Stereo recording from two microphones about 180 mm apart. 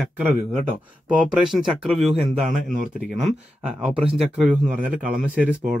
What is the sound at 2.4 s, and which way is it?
Speech, 40° right (ahead or behind).